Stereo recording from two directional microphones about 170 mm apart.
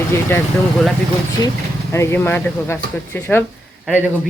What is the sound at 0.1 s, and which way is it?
Speech, 15° left (ahead or behind).